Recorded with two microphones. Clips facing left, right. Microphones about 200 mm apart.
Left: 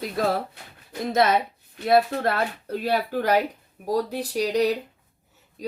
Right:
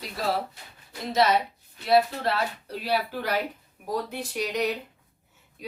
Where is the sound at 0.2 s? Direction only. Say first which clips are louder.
Left 3 dB; 50° left (ahead or behind).